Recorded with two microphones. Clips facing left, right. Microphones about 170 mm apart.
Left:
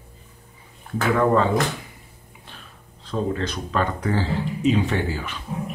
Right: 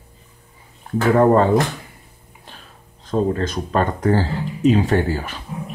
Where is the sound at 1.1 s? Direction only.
45° right (ahead or behind).